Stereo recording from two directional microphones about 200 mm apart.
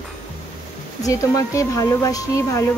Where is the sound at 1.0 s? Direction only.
15° left (ahead or behind).